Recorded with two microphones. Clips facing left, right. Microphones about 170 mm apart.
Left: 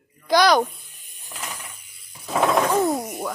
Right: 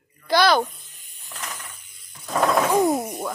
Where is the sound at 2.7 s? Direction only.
20° right (ahead or behind).